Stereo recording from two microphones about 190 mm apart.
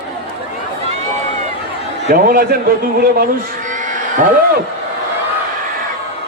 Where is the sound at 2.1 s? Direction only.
50° right (ahead or behind).